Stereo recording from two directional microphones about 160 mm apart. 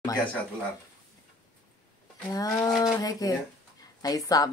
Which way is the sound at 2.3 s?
20° left (ahead or behind).